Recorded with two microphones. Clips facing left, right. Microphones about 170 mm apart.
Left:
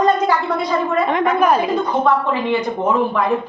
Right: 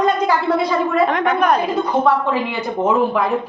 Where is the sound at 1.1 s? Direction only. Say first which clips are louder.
Left 1 dB; centre (ahead or behind).